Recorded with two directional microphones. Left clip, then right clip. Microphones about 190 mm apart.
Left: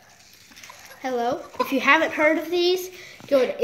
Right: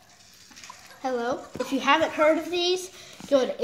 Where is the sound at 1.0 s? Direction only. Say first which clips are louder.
Left 3 dB; 10° left (ahead or behind).